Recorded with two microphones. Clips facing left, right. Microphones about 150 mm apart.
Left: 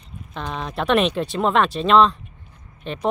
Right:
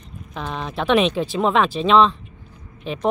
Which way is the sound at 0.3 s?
Centre (ahead or behind).